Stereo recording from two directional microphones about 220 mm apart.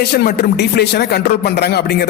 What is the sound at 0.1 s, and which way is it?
Speech, 45° left (ahead or behind).